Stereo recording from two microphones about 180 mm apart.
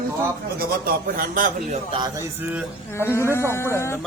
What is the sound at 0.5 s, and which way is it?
A man's voice, 55° right (ahead or behind).